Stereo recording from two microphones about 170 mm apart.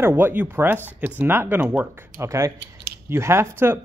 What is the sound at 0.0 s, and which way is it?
Speech, 10° right (ahead or behind).